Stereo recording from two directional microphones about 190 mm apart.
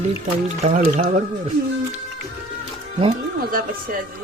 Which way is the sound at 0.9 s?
40° right (ahead or behind).